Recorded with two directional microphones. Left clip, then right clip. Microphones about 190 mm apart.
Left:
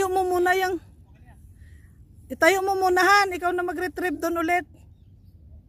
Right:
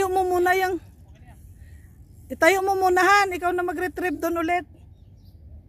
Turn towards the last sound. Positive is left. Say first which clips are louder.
# even
turn(degrees=15)  # may be behind; listen again after turning